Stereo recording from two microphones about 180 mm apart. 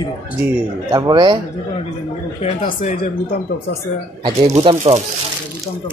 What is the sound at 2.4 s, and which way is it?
Speech, 45° left (ahead or behind).